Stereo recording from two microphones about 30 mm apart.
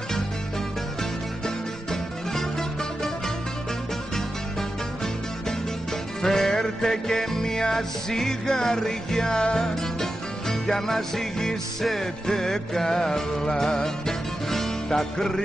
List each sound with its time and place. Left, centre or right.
1.4 s music: centre
6.3 s music: centre
10.5 s music: centre